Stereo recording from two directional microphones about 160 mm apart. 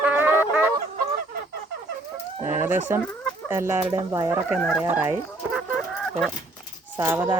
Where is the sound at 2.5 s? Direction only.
15° right (ahead or behind).